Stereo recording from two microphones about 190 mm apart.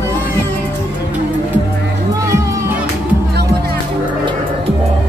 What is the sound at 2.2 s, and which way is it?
Music, 15° right (ahead or behind).